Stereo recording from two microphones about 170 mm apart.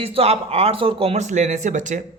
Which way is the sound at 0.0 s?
35° right (ahead or behind).